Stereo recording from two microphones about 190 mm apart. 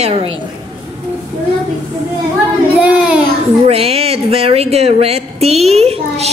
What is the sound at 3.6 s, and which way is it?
Speech, 30° right (ahead or behind).